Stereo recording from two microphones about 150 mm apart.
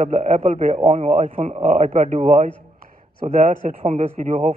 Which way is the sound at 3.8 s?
50° right (ahead or behind).